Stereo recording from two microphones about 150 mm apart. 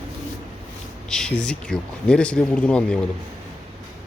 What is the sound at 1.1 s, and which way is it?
Speech, 5° left (ahead or behind).